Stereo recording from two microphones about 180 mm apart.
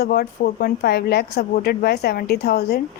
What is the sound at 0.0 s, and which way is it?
A woman's voice, 60° left (ahead or behind).